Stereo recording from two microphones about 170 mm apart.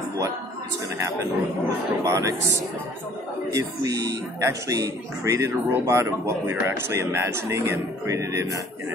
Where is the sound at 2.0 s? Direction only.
20° right (ahead or behind).